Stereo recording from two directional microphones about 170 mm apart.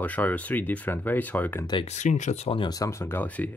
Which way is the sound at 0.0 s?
10° left (ahead or behind).